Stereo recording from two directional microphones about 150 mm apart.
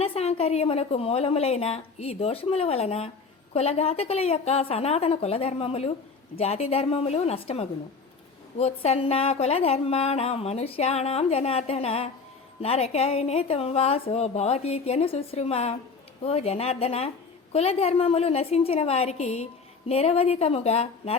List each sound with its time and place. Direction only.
0.0 s a woman's voice: 40° left (ahead or behind)